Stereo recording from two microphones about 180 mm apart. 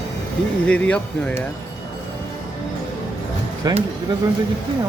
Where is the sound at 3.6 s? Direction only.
20° right (ahead or behind).